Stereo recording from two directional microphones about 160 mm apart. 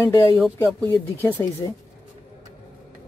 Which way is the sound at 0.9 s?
15° left (ahead or behind).